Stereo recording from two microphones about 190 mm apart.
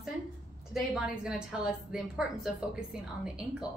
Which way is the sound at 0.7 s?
5° right (ahead or behind).